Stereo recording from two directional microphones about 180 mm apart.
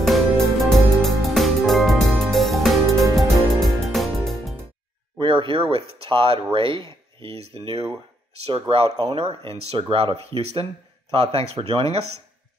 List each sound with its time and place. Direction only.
0.0 s music: centre (ahead or behind)
5.2 s speech: 30° right (ahead or behind)